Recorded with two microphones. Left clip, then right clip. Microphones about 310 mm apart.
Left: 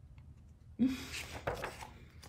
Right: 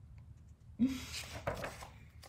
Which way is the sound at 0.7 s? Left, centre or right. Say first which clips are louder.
Left 1 dB; centre.